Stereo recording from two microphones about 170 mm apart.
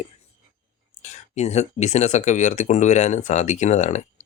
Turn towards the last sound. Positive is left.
turn(degrees=45)  # may be behind; listen again after turning